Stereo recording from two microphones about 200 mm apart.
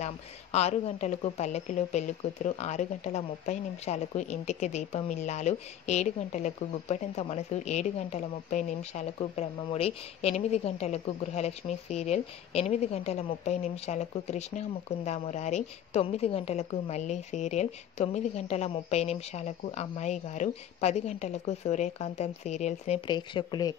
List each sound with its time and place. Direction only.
0.0 s a woman's voice: 35° left (ahead or behind)